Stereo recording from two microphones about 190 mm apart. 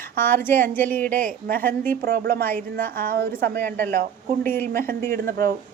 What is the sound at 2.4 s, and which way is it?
Speech, 10° left (ahead or behind).